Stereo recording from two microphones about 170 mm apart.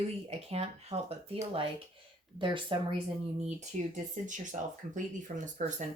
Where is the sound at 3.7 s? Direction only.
40° right (ahead or behind).